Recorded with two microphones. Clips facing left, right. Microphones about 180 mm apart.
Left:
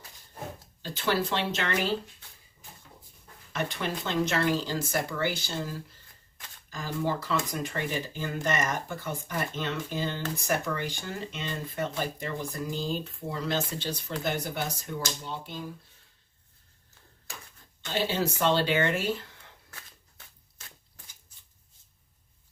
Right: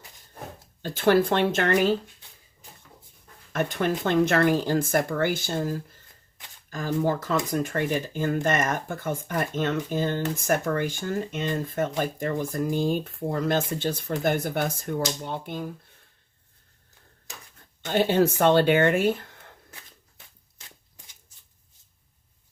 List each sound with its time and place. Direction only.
0.8 s speech: 50° right (ahead or behind)
3.5 s speech: 50° right (ahead or behind)
17.8 s speech: 55° right (ahead or behind)
20.6 s a sound: 20° right (ahead or behind)